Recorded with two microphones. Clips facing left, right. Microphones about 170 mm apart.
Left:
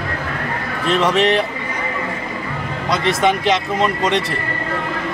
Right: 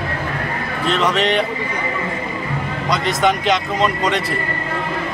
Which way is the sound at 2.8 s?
Centre (ahead or behind).